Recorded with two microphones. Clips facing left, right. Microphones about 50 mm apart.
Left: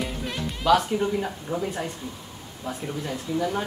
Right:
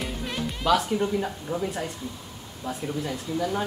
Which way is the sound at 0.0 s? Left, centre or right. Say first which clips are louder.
Left 1 dB; centre.